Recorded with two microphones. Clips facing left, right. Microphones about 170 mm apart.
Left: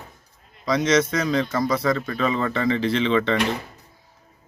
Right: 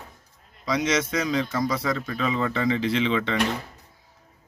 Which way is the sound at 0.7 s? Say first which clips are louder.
Left 4 dB; 10° right (ahead or behind).